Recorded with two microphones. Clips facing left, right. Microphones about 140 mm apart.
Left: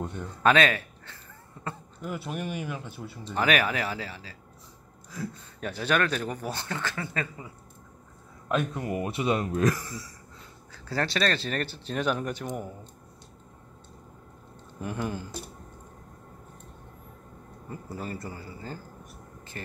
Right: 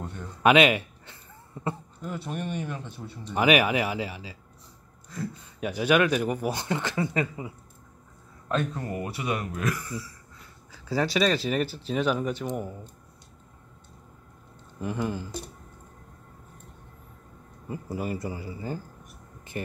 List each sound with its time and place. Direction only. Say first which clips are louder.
0.4 s speech: right 3 dB; 10° right (ahead or behind)
2.0 s speech: even; 10° left (ahead or behind)
3.3 s speech: right 4 dB; 10° right (ahead or behind)
5.6 s speech: right 4 dB; 10° right (ahead or behind)
8.5 s speech: left 1 dB; 10° left (ahead or behind); by 10.0 s 35° left (ahead or behind)
10.7 s speech: right 3 dB; 5° right (ahead or behind)
14.8 s speech: right 2 dB; centre (ahead or behind)
17.6 s speech: right 5 dB; 10° right (ahead or behind)
19.6 s a sound: right 7 dB; 15° right (ahead or behind)